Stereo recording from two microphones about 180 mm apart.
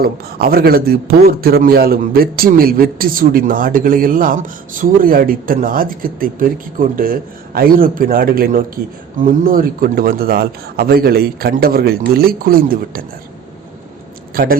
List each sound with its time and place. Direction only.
0.0 s a man's voice: 55° right (ahead or behind)